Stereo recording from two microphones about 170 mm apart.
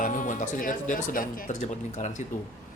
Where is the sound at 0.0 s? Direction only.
50° left (ahead or behind).